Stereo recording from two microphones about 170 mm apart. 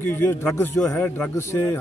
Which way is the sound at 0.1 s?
15° left (ahead or behind).